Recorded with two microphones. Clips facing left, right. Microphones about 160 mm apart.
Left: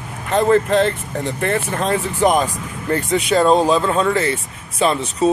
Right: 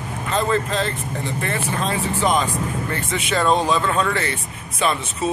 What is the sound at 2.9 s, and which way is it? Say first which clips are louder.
Speech: left 11 dB; 40° left (ahead or behind).